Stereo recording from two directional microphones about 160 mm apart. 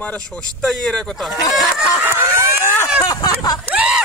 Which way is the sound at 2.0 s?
15° right (ahead or behind).